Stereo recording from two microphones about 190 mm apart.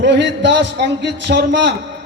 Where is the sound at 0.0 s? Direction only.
65° right (ahead or behind).